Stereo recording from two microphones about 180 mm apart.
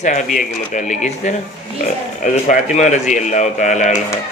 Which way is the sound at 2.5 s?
40° left (ahead or behind).